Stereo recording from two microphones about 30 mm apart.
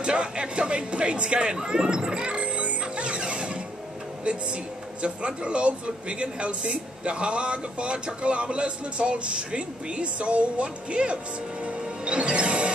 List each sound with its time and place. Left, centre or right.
0.0 s speech: right
2.4 s music: right
4.2 s speech: right
11.6 s music: right